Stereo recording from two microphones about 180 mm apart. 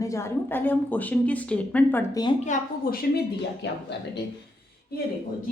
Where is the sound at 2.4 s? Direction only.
45° left (ahead or behind).